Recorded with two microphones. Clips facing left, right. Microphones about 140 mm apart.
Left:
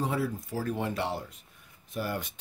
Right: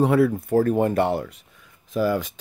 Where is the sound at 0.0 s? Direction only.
65° right (ahead or behind).